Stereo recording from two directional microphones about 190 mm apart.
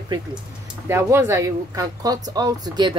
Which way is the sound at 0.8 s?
15° right (ahead or behind).